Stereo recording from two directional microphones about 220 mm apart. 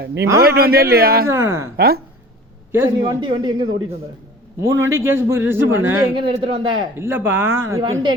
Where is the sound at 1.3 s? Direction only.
10° right (ahead or behind).